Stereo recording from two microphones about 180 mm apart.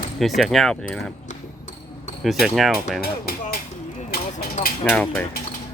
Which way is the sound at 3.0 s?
55° left (ahead or behind).